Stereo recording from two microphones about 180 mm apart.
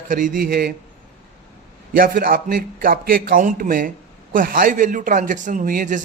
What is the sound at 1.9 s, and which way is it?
Speech, 50° right (ahead or behind).